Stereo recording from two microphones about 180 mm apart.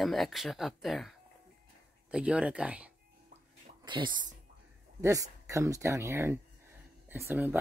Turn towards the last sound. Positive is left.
turn(degrees=-10)  # may be behind; listen again after turning